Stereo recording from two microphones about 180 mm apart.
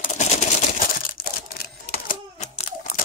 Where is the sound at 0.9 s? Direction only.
55° left (ahead or behind).